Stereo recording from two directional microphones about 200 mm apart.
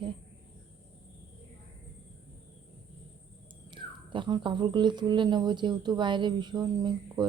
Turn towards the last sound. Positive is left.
turn(degrees=-20)  # may be behind; listen again after turning